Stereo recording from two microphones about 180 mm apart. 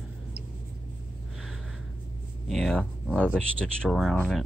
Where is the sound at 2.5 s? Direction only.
Centre (ahead or behind).